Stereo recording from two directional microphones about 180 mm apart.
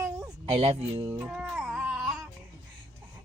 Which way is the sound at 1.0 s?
15° right (ahead or behind).